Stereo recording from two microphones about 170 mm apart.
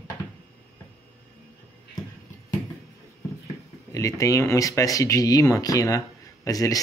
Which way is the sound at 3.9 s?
20° left (ahead or behind).